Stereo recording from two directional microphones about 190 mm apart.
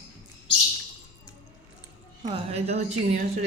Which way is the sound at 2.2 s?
30° right (ahead or behind).